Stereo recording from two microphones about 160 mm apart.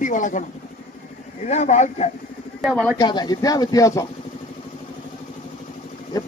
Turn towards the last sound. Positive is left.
turn(degrees=25)  # may be behind; listen again after turning